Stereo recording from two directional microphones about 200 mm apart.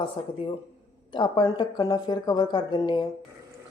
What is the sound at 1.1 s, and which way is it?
Speech, 25° left (ahead or behind).